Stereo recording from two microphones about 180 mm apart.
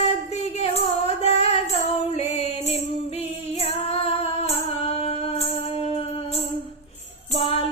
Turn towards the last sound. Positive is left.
turn(degrees=30)  # may be behind; listen again after turning